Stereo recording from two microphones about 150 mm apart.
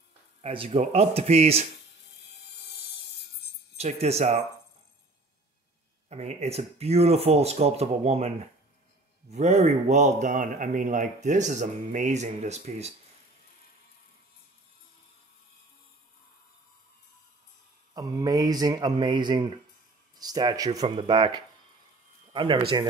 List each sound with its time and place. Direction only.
0.4 s speech: 40° right (ahead or behind)
3.7 s speech: 45° right (ahead or behind)
6.0 s speech: 45° right (ahead or behind)
9.3 s speech: 50° right (ahead or behind)
17.9 s speech: 25° right (ahead or behind)